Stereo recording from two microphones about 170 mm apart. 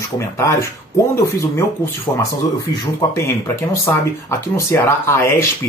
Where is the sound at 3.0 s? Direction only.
20° left (ahead or behind).